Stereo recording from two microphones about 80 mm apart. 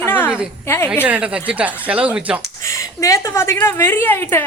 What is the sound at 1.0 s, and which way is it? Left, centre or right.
Speech, centre.